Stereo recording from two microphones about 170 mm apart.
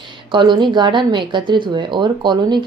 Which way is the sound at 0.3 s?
25° right (ahead or behind).